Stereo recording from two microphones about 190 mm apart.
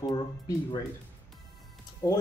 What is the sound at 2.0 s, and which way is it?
Speech, 15° left (ahead or behind).